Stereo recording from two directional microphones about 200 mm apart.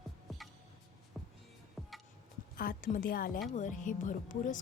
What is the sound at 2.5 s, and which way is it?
Speech, 45° left (ahead or behind).